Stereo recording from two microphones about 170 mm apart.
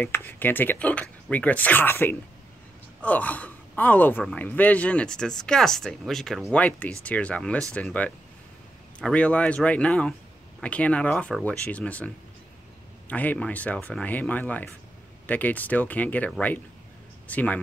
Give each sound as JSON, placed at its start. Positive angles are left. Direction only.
{"t": 0.0, "sound": "speech", "side_deg": 10}
{"t": 13.1, "sound": "speech", "side_deg": 10}